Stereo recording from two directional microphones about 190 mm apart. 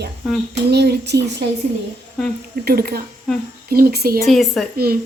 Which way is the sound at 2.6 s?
55° right (ahead or behind).